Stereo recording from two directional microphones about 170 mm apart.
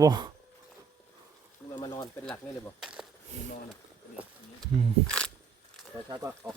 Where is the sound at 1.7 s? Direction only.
25° left (ahead or behind).